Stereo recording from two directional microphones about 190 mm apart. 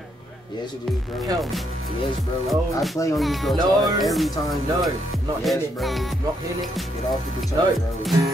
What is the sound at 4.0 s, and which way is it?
Speech, centre (ahead or behind).